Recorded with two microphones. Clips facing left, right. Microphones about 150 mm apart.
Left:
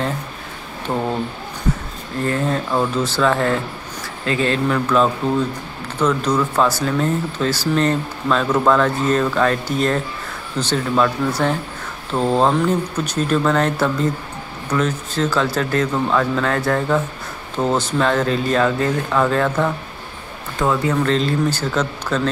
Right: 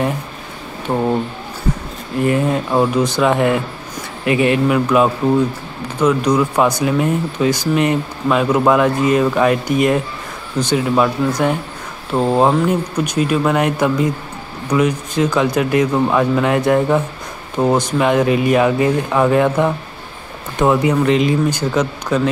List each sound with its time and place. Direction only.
2.2 s speech: 15° right (ahead or behind)